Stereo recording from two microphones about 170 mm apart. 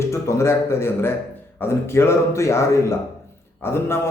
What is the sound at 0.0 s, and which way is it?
A man's voice, 15° left (ahead or behind).